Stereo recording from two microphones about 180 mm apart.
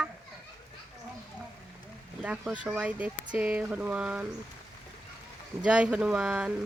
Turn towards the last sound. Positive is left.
turn(degrees=-5)  # may be behind; listen again after turning